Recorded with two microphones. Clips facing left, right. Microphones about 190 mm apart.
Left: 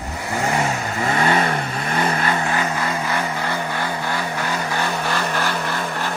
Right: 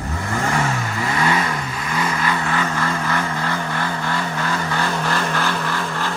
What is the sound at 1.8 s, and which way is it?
Vehicle, 55° left (ahead or behind).